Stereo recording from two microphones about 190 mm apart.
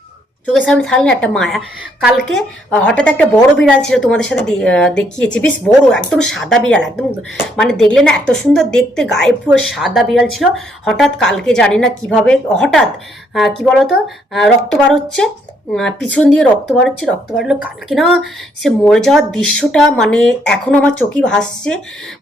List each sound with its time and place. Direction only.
0.4 s speech: 5° left (ahead or behind)